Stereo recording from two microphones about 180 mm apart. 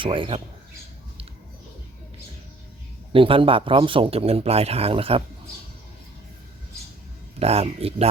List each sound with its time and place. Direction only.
0.0 s speech: 30° right (ahead or behind)
3.1 s speech: 30° right (ahead or behind)
7.3 s speech: 35° right (ahead or behind)